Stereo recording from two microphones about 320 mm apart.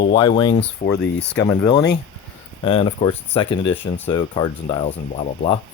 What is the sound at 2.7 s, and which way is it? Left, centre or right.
Speech, centre.